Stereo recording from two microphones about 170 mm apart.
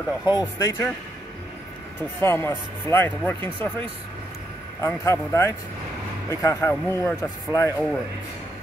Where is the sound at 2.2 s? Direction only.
15° left (ahead or behind).